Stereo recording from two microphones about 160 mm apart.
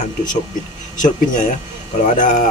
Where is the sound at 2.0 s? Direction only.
50° left (ahead or behind).